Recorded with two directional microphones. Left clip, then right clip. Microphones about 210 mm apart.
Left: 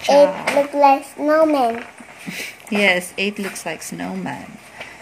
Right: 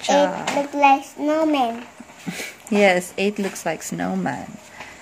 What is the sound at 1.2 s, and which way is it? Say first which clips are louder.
Speech: left 4 dB; 10° right (ahead or behind).